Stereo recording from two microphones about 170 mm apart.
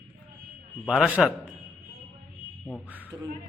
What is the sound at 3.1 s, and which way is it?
Beatboxing, 25° right (ahead or behind).